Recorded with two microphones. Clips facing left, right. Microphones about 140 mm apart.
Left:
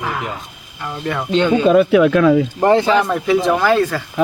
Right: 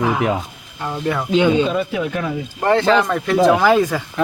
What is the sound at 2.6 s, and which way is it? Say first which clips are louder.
Speech: even; 15° left (ahead or behind).